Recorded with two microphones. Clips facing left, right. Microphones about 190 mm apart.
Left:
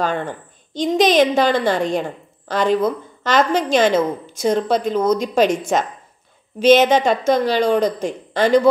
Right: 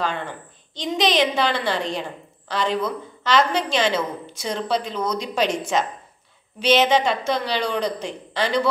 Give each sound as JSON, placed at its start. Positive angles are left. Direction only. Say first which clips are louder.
{"t": 0.0, "sound": "a woman's voice", "louder": "left 5 dB", "side_deg": 45}